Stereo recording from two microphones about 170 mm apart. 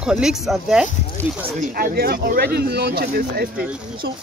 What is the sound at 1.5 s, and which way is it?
Speech, 60° right (ahead or behind).